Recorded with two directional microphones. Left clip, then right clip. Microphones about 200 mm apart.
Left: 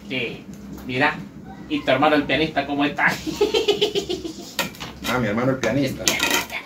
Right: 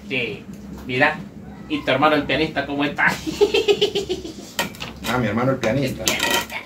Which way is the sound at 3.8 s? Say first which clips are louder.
Right 1 dB; 20° left (ahead or behind).